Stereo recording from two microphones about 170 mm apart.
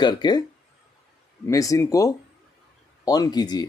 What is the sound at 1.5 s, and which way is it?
Speech, 20° left (ahead or behind).